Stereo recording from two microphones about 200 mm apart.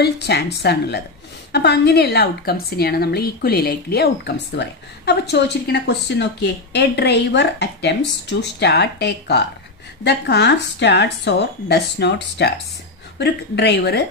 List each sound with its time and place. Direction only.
0.0 s a woman's voice: 55° left (ahead or behind)